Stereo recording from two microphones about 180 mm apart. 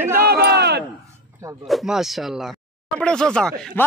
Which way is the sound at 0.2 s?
60° right (ahead or behind).